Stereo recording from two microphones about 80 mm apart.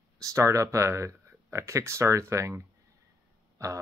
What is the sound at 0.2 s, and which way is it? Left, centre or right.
Speech, right.